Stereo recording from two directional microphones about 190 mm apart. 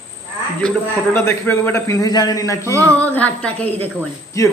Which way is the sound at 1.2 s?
10° left (ahead or behind).